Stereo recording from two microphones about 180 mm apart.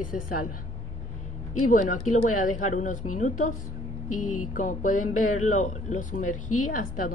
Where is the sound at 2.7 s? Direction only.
45° left (ahead or behind).